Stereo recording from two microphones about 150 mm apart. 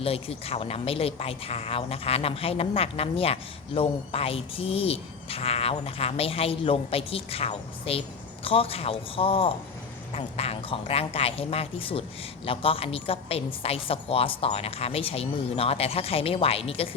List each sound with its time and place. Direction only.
0.0 s a woman's voice: 40° left (ahead or behind)